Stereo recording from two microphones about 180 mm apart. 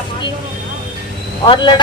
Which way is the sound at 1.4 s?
25° left (ahead or behind).